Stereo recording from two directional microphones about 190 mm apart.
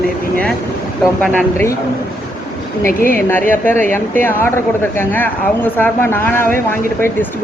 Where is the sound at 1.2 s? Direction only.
5° left (ahead or behind).